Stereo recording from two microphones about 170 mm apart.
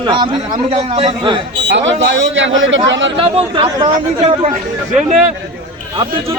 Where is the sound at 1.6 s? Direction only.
90° right.